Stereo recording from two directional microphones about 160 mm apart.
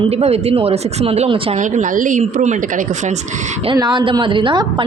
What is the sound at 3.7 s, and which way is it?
A woman's voice, 30° right (ahead or behind).